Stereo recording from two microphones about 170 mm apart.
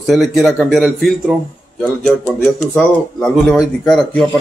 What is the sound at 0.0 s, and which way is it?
Speech, centre (ahead or behind).